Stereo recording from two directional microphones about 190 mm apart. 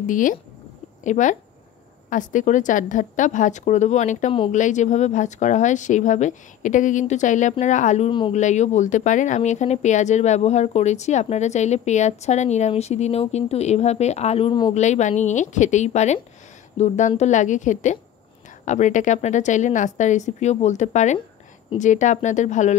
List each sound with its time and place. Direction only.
0.0 s speech: 45° left (ahead or behind)
8.1 s speech: 25° left (ahead or behind)
8.4 s speech: 40° left (ahead or behind)
14.7 s speech: 40° left (ahead or behind)